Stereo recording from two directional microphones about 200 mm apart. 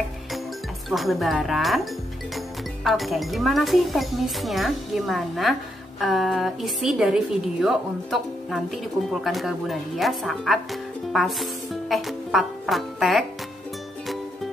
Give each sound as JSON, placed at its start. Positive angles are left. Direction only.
{"t": 0.8, "sound": "speech", "side_deg": 0}